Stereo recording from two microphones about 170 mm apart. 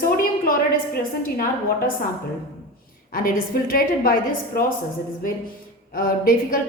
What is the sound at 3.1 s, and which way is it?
A woman's voice, 60° left (ahead or behind).